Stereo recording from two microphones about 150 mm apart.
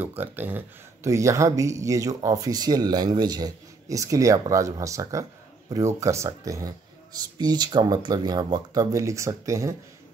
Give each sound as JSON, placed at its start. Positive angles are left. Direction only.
{"t": 0.0, "sound": "speech", "side_deg": -15}